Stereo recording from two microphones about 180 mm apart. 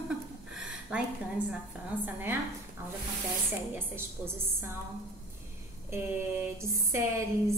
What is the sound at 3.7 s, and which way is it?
Speech, 15° right (ahead or behind).